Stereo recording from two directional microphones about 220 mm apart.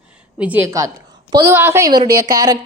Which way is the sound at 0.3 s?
5° right (ahead or behind).